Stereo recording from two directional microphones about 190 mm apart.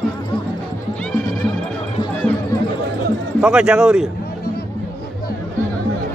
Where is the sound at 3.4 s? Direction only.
5° right (ahead or behind).